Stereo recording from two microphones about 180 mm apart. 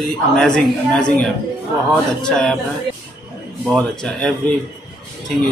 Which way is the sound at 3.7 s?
5° left (ahead or behind).